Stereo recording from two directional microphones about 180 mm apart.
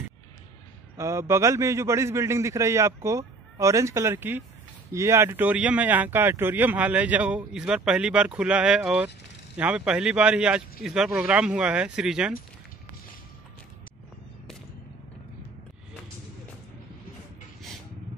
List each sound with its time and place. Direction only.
0.9 s speech: 15° right (ahead or behind)